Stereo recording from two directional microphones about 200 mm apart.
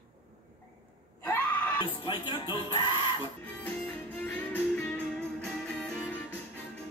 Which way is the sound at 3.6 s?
5° left (ahead or behind).